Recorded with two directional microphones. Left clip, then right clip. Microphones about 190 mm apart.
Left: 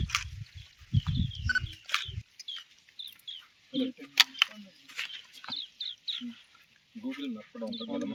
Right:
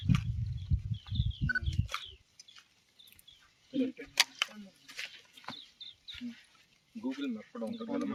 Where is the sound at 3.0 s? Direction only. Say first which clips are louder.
Left 15 dB; 40° right (ahead or behind).